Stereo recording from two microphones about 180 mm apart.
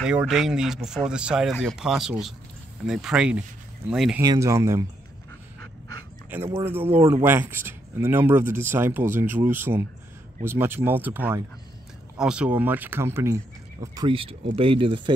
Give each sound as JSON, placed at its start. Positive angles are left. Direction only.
{"t": 0.0, "sound": "speech", "side_deg": -5}
{"t": 4.2, "sound": "speech", "side_deg": -20}
{"t": 6.3, "sound": "speech", "side_deg": -15}